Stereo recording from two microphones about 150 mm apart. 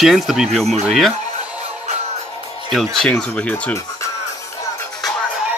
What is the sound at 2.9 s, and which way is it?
Speech, 5° left (ahead or behind).